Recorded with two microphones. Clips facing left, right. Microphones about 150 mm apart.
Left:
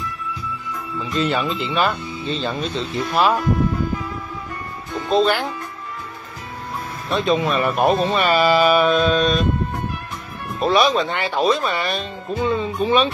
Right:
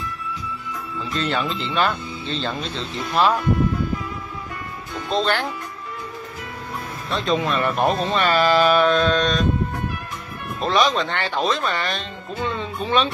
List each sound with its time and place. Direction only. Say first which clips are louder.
1.1 s speech: left 3 dB; 5° left (ahead or behind)
5.1 s speech: left 4 dB; 10° left (ahead or behind)
7.1 s speech: left 3 dB; centre (ahead or behind)
10.6 s speech: left 3 dB; 10° left (ahead or behind)